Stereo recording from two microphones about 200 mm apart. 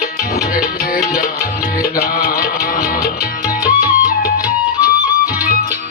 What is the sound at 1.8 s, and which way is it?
Music, 45° left (ahead or behind).